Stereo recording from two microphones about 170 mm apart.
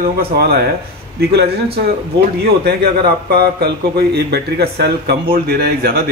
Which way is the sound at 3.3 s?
65° right (ahead or behind).